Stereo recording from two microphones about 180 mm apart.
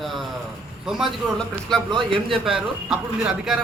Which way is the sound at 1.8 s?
25° right (ahead or behind).